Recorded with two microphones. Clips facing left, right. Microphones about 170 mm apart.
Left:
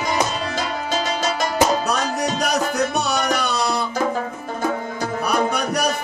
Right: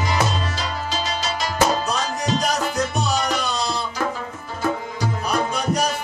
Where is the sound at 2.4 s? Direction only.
65° left (ahead or behind).